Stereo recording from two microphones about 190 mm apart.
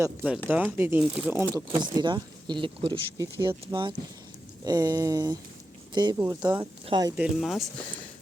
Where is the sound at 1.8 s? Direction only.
25° right (ahead or behind).